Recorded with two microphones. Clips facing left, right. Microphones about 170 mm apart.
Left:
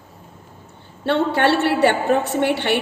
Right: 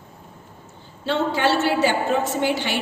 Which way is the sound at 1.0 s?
60° left (ahead or behind).